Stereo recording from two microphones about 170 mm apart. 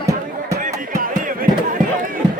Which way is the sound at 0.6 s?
50° right (ahead or behind).